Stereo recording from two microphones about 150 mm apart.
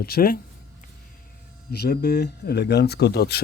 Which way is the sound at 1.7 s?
90° left.